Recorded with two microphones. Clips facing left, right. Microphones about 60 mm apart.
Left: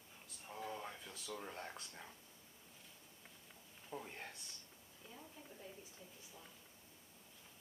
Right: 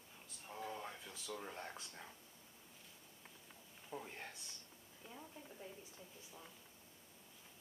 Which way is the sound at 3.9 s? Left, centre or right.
Centre.